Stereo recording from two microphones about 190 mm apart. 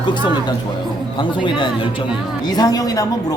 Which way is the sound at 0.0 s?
25° left (ahead or behind).